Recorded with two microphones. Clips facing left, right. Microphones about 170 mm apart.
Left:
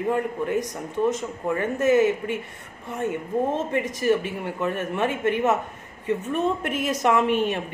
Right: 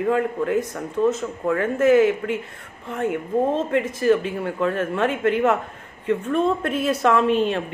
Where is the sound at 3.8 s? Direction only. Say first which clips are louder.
Right 3 dB; 15° left (ahead or behind).